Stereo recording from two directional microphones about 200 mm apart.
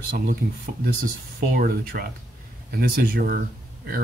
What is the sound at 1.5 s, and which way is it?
Speech, 45° right (ahead or behind).